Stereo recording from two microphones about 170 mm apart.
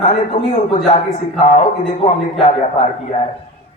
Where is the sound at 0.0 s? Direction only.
35° left (ahead or behind).